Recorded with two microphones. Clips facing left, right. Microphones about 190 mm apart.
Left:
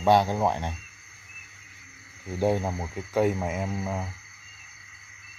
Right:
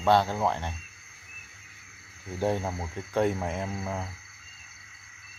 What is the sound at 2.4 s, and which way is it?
Speech, 10° left (ahead or behind).